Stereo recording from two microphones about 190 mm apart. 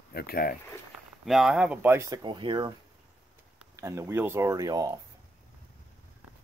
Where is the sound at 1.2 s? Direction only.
Centre (ahead or behind); by 2.7 s 25° right (ahead or behind).